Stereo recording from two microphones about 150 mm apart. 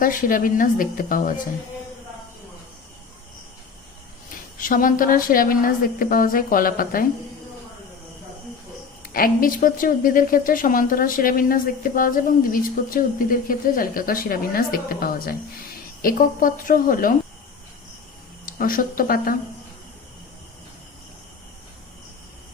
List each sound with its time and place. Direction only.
0.0 s speech: 65° left (ahead or behind)
4.6 s a woman's voice: 65° left (ahead or behind)
9.0 s a woman's voice: 75° left (ahead or behind)
18.4 s a woman's voice: 70° left (ahead or behind)